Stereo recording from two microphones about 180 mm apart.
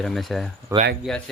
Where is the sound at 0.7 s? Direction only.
15° right (ahead or behind).